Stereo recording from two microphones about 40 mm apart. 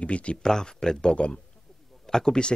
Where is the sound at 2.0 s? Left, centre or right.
Centre.